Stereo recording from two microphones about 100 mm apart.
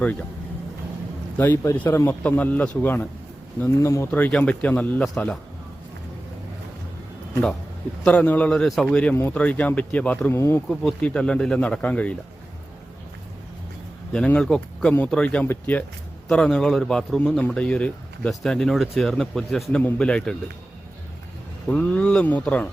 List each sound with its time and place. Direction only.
0.0 s speech: 15° left (ahead or behind)
1.7 s speech: 20° left (ahead or behind)
3.8 s speech: 30° left (ahead or behind); by 5.4 s 10° left (ahead or behind)
8.0 s speech: 15° left (ahead or behind)
10.3 s speech: 25° left (ahead or behind)
10.7 s speech: 10° left (ahead or behind)
14.1 s speech: 10° left (ahead or behind)
21.7 s speech: 15° left (ahead or behind)